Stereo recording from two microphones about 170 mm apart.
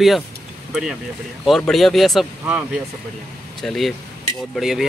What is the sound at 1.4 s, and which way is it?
Speech, centre (ahead or behind).